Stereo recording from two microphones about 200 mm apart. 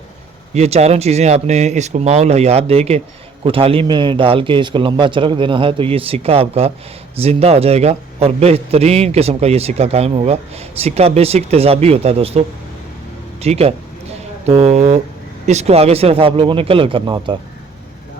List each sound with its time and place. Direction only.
0.5 s a man's voice: 30° right (ahead or behind)
13.4 s a sound: 30° right (ahead or behind)
15.4 s a man's voice: 30° right (ahead or behind)